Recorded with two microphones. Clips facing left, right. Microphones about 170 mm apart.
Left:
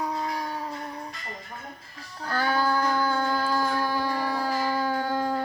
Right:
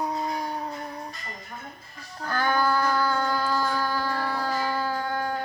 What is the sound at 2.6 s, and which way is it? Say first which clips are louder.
Child singing: right 1 dB; 10° left (ahead or behind).